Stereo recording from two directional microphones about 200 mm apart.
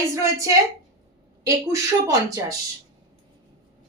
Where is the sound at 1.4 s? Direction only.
15° right (ahead or behind).